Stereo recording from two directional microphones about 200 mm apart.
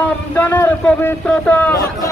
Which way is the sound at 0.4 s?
10° left (ahead or behind).